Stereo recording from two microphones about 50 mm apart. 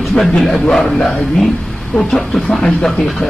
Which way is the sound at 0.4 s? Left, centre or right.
Centre.